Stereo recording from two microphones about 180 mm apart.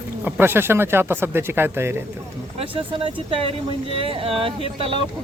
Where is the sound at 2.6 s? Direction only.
30° right (ahead or behind).